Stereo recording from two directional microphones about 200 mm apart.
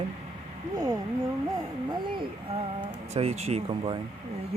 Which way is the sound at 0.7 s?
35° right (ahead or behind).